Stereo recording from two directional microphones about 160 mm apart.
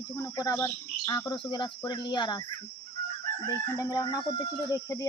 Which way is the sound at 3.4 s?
20° left (ahead or behind).